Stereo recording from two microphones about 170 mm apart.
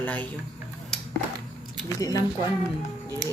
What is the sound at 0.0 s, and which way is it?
Speech, 10° left (ahead or behind).